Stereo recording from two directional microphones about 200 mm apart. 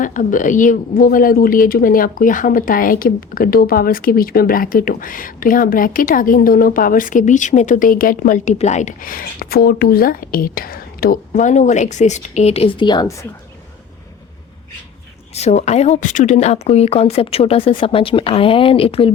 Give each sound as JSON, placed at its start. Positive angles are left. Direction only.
{"t": 0.0, "sound": "speech", "side_deg": 40}
{"t": 15.4, "sound": "speech", "side_deg": 35}